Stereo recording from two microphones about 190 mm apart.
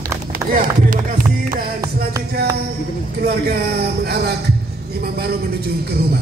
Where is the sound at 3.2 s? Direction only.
55° right (ahead or behind).